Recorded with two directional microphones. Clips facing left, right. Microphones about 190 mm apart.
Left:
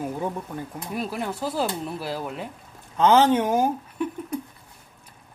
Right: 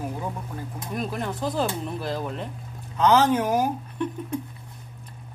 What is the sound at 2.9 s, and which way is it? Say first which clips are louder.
Speech: left 2 dB; 30° left (ahead or behind).